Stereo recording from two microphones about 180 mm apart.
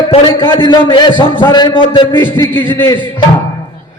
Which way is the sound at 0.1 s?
30° left (ahead or behind).